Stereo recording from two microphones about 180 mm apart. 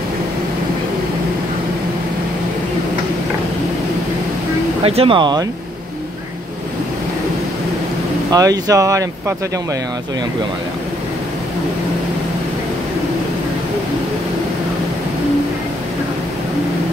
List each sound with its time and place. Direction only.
4.8 s speech: 30° right (ahead or behind)
8.3 s speech: 20° right (ahead or behind)